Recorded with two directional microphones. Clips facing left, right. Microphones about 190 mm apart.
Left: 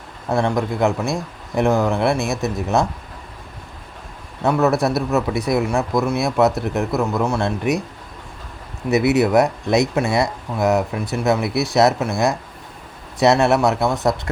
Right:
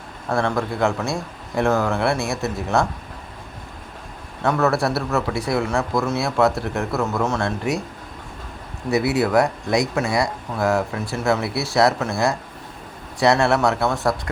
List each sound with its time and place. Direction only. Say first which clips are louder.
0.3 s speech: left 2 dB; 15° left (ahead or behind)
4.4 s speech: left 2 dB; 15° left (ahead or behind)
8.9 s speech: left 3 dB; 20° left (ahead or behind)